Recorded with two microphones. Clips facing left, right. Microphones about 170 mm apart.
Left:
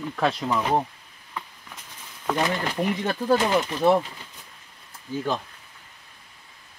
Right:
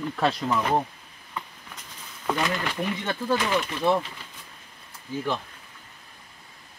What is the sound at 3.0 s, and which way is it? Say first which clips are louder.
Speech: left 5 dB; 40° left (ahead or behind).